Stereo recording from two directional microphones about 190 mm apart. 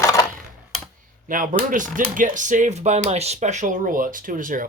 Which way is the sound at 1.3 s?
45° right (ahead or behind).